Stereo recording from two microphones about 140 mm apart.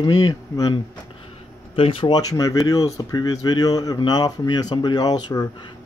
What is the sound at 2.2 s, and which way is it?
Speech, 25° left (ahead or behind).